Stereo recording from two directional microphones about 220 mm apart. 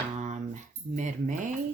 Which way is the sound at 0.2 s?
35° right (ahead or behind).